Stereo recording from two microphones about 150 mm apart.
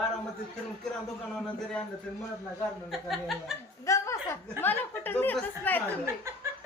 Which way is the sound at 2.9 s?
Centre (ahead or behind).